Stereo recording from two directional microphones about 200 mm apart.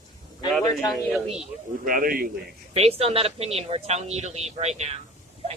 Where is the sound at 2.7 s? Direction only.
30° right (ahead or behind).